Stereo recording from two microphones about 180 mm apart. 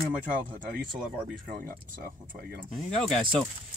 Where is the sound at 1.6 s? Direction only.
55° right (ahead or behind).